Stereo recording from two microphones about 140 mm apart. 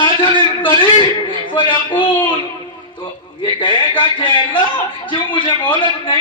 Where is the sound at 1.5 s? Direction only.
35° left (ahead or behind).